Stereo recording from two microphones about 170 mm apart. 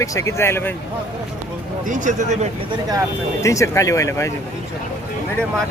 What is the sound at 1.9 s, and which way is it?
Speech, 45° right (ahead or behind).